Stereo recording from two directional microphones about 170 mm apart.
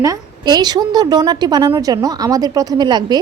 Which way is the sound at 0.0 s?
20° right (ahead or behind).